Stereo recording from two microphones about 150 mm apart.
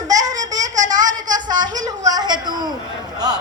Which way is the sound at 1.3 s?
30° right (ahead or behind).